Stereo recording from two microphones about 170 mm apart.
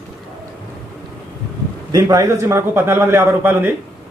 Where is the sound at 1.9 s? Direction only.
20° right (ahead or behind).